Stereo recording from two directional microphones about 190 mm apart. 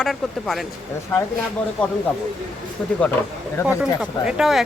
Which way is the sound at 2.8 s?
5° left (ahead or behind).